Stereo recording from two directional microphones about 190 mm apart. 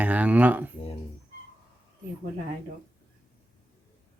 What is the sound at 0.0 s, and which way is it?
Speech, 10° right (ahead or behind).